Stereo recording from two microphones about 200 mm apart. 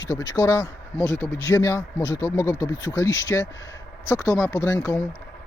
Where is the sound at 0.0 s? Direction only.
15° left (ahead or behind).